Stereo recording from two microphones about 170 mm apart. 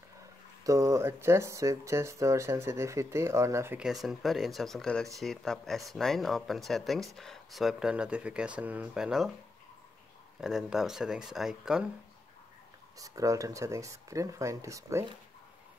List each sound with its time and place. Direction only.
0.7 s speech: 20° right (ahead or behind)
3.8 s speech: centre (ahead or behind)
10.4 s speech: centre (ahead or behind)
13.0 s speech: 20° right (ahead or behind)